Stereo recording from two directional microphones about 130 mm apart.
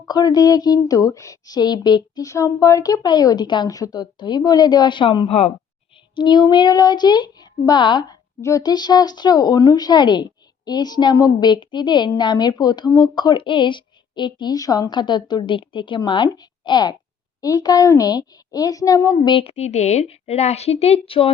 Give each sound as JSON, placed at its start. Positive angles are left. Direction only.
{"t": 0.1, "sound": "a woman's voice", "side_deg": 30}
{"t": 19.3, "sound": "a woman's voice", "side_deg": 45}